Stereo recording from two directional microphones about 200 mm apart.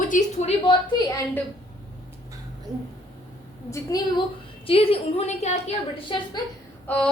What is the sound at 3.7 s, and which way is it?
Speech, 15° left (ahead or behind).